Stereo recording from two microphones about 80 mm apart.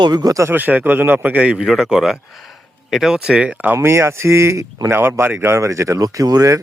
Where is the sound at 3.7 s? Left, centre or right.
Right.